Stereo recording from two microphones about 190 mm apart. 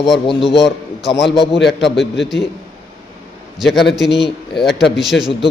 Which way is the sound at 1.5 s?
70° left (ahead or behind).